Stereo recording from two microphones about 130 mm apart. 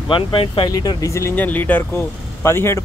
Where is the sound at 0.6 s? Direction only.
30° left (ahead or behind).